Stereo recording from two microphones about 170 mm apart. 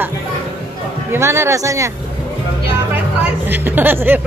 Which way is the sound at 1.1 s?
15° right (ahead or behind).